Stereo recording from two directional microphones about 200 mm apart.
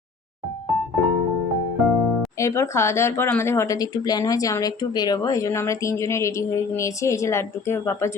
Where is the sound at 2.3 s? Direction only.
15° left (ahead or behind).